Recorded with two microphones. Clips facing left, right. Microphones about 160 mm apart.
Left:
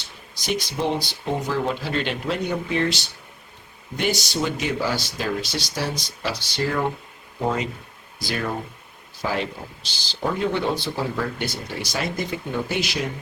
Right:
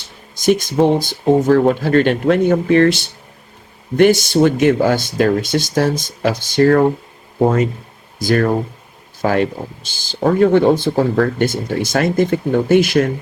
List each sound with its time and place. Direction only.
0.3 s speech: 50° right (ahead or behind)
7.3 s speech: 45° right (ahead or behind)